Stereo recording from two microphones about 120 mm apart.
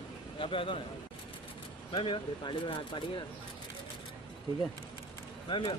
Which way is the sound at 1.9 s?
45° left (ahead or behind).